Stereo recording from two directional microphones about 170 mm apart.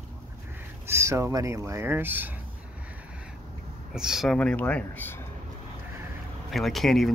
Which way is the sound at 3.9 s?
5° right (ahead or behind).